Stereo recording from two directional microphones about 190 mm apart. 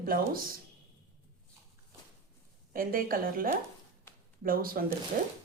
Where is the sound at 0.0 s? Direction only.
50° right (ahead or behind).